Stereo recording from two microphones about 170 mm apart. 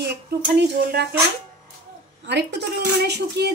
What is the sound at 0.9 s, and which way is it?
Speech, 70° right (ahead or behind).